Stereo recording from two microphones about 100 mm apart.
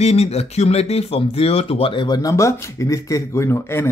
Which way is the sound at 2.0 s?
40° left (ahead or behind).